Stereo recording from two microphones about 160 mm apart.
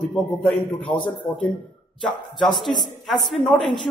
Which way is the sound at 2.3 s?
Centre (ahead or behind).